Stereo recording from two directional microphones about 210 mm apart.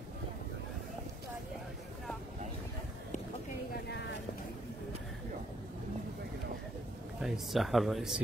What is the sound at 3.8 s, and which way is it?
Vehicle, 55° left (ahead or behind).